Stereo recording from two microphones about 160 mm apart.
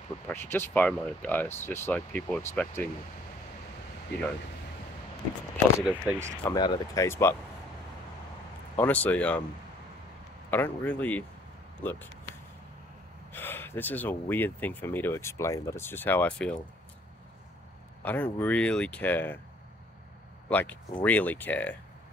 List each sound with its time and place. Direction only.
0.3 s speech: 15° left (ahead or behind)
5.9 s speech: 10° right (ahead or behind)
6.5 s speech: 25° left (ahead or behind)
8.7 s speech: 10° left (ahead or behind)
10.5 s speech: 10° left (ahead or behind)
13.3 s speech: 15° left (ahead or behind)
18.0 s speech: 10° left (ahead or behind)
20.4 s speech: 10° left (ahead or behind)